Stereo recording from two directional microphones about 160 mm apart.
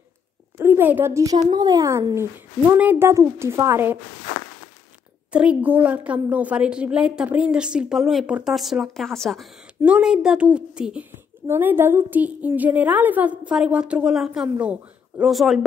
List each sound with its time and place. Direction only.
0.6 s a woman's voice: 15° right (ahead or behind)
5.3 s a woman's voice: 5° right (ahead or behind)